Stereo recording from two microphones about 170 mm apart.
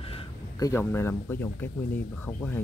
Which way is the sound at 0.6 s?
15° left (ahead or behind).